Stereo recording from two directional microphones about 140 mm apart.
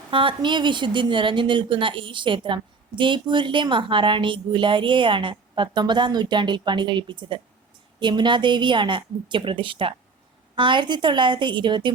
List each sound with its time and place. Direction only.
0.1 s a woman's voice: 40° right (ahead or behind)